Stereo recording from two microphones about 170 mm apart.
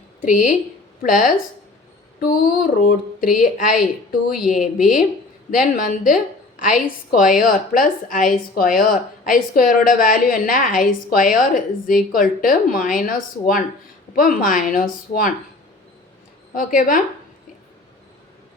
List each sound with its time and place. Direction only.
1.0 s a woman's voice: 50° left (ahead or behind)
4.4 s speech: centre (ahead or behind)
5.5 s a woman's voice: 55° left (ahead or behind)
16.6 s a woman's voice: 55° left (ahead or behind)